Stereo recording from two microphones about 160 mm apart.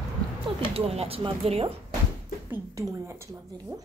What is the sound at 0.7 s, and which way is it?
Speech, 40° right (ahead or behind).